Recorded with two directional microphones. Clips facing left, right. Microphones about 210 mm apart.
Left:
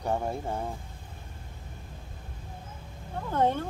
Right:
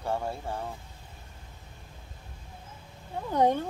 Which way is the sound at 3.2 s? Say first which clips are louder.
Right 2 dB; 15° right (ahead or behind).